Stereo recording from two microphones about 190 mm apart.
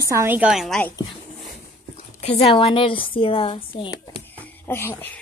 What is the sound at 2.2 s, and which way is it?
A woman's voice, 30° left (ahead or behind).